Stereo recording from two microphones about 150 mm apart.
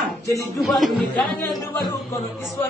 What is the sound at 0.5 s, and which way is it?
Speech, centre (ahead or behind).